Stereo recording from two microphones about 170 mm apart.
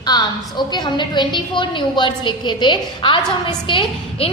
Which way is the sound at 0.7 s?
25° left (ahead or behind).